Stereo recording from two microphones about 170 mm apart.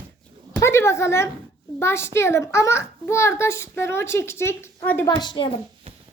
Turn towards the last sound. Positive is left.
turn(degrees=25)  # may be behind; listen again after turning